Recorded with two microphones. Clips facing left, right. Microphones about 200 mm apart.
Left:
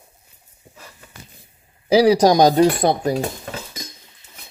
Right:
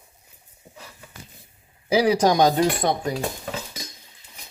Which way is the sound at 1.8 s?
35° left (ahead or behind).